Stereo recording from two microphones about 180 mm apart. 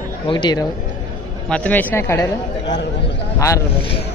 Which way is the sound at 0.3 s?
25° left (ahead or behind).